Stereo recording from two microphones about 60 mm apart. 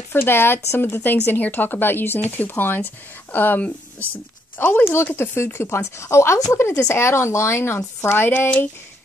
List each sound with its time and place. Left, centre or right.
0.1 s speech: left
8.3 s speech: left